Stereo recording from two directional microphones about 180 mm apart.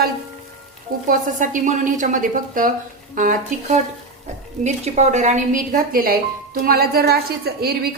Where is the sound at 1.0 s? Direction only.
45° right (ahead or behind).